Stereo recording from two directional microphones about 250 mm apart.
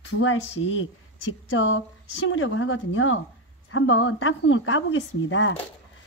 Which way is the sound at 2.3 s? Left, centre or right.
Left.